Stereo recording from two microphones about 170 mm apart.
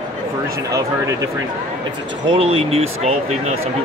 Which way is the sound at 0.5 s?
20° right (ahead or behind).